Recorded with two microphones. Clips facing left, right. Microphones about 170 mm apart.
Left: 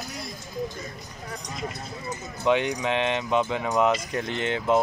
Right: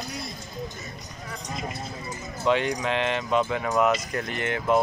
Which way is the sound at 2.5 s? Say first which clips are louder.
Left 1 dB; 15° left (ahead or behind).